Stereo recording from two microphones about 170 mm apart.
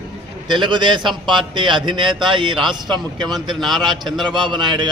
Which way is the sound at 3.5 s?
Centre (ahead or behind).